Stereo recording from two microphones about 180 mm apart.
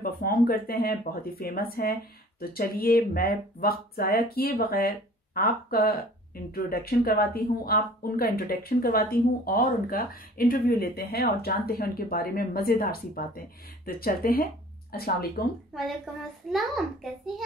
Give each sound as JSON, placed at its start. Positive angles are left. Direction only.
{"t": 0.0, "sound": "speech", "side_deg": 55}
{"t": 16.1, "sound": "a child's voice", "side_deg": 5}